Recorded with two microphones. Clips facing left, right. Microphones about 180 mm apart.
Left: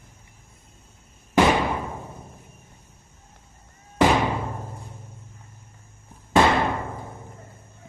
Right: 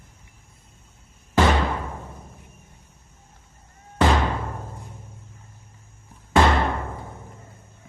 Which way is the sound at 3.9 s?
15° left (ahead or behind).